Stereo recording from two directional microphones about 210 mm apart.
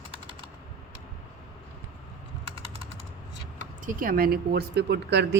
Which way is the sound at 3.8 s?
40° right (ahead or behind).